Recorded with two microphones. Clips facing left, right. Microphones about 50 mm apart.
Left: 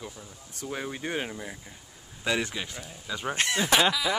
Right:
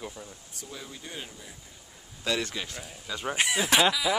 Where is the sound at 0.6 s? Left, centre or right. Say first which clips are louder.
Left 9 dB; left.